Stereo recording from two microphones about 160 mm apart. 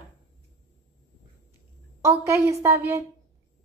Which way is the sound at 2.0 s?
15° right (ahead or behind).